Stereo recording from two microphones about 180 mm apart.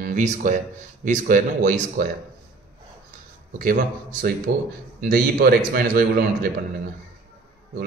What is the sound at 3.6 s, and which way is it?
A man's voice, 50° right (ahead or behind).